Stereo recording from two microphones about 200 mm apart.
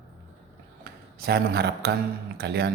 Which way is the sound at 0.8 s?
55° right (ahead or behind).